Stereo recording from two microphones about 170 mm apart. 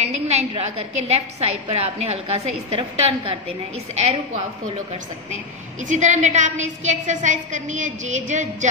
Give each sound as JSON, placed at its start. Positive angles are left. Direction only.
{"t": 0.0, "sound": "a sound", "side_deg": -40}
{"t": 0.5, "sound": "a woman's voice", "side_deg": -35}
{"t": 5.8, "sound": "a woman's voice", "side_deg": -45}